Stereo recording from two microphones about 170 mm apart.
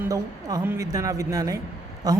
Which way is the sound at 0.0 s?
20° right (ahead or behind).